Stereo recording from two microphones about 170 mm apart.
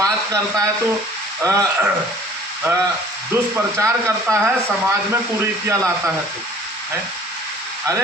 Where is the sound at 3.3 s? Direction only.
15° right (ahead or behind).